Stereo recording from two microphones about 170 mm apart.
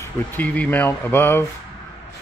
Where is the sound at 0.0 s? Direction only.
10° left (ahead or behind).